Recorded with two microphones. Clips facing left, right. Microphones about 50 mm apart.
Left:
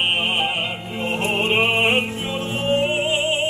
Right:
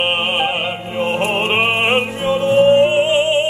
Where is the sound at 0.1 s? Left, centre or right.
Right.